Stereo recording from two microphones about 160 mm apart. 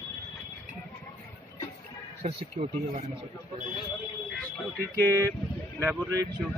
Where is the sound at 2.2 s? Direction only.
45° right (ahead or behind).